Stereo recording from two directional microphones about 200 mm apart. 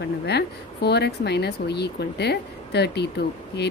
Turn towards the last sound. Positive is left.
turn(degrees=55)  # may be behind; listen again after turning